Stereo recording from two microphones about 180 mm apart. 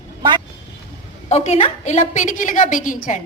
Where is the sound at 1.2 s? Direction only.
35° left (ahead or behind).